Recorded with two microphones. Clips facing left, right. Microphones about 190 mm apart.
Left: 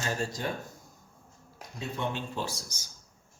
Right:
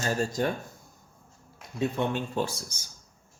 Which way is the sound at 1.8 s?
55° right (ahead or behind).